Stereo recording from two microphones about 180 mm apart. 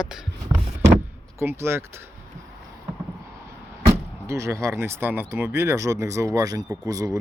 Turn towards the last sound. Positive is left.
turn(degrees=-20)  # may be behind; listen again after turning